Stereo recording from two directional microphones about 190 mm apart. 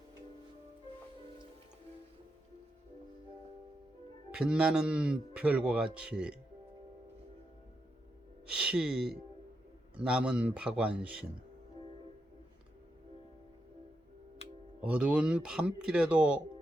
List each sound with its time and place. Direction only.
4.3 s speech: 5° right (ahead or behind)
8.5 s speech: 5° right (ahead or behind)
14.8 s speech: 5° right (ahead or behind)